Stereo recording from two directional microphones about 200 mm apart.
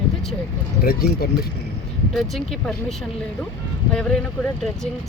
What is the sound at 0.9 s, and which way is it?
Speech, 50° left (ahead or behind).